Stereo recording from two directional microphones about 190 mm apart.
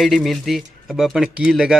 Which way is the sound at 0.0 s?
Centre (ahead or behind).